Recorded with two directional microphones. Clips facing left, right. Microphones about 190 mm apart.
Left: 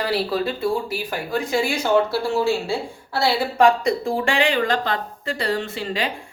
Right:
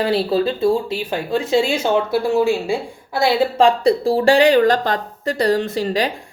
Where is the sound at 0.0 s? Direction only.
25° right (ahead or behind).